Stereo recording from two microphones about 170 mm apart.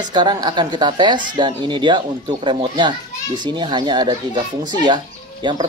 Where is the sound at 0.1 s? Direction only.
25° right (ahead or behind).